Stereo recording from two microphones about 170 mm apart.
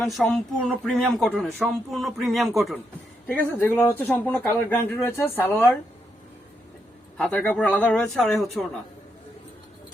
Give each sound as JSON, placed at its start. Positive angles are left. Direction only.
{"t": 0.1, "sound": "speech", "side_deg": 0}
{"t": 3.2, "sound": "speech", "side_deg": 10}
{"t": 7.2, "sound": "speech", "side_deg": 5}